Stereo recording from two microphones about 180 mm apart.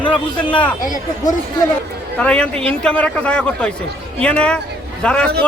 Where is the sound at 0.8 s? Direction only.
45° left (ahead or behind).